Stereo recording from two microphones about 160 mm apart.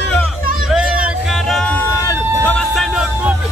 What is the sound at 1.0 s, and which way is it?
Music, centre (ahead or behind).